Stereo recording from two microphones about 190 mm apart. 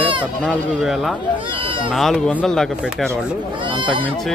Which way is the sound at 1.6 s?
25° right (ahead or behind).